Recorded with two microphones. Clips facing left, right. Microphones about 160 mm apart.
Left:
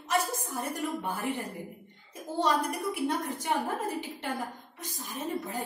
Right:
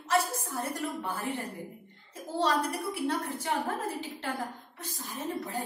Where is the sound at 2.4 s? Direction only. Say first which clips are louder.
Left 1 dB; 10° left (ahead or behind).